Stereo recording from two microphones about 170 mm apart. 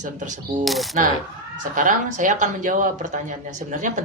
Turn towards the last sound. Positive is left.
turn(degrees=-50)  # may be behind; listen again after turning